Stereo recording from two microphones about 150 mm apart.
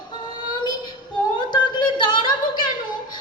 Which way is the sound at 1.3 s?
30° left (ahead or behind).